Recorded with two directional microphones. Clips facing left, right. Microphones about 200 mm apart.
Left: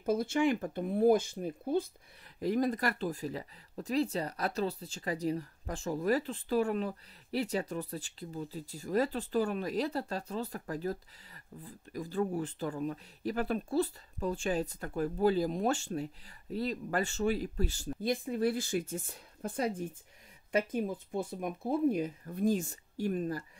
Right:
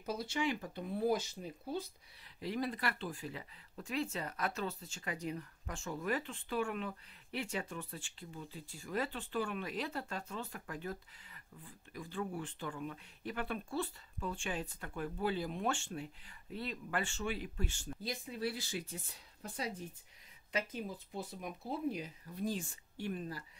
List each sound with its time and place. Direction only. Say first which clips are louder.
0.0 s speech: left 8 dB; 50° left (ahead or behind)
18.0 s speech: left 9 dB; 50° left (ahead or behind)